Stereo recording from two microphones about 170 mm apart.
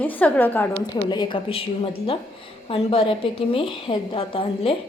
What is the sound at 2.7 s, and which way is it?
A woman's voice, 30° left (ahead or behind).